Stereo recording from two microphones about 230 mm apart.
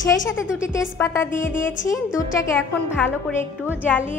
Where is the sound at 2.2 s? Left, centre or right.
Centre.